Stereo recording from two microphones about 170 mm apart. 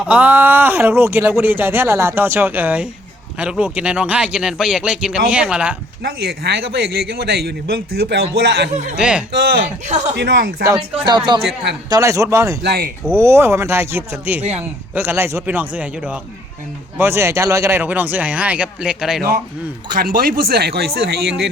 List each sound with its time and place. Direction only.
0.1 s speech: 10° right (ahead or behind)
6.0 s a man's voice: 70° right (ahead or behind)
8.7 s speech: 45° right (ahead or behind)
9.0 s speech: 5° right (ahead or behind)
9.8 s speech: 45° right (ahead or behind)
10.2 s speech: 70° right (ahead or behind)
10.7 s speech: 25° right (ahead or behind)
12.6 s speech: 65° right (ahead or behind)
13.1 s speech: 15° right (ahead or behind)
19.9 s speech: 55° right (ahead or behind)